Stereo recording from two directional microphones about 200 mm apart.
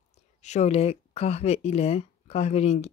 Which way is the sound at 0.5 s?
35° left (ahead or behind).